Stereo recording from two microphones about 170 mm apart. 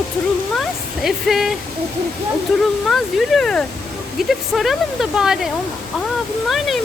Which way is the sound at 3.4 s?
5° left (ahead or behind).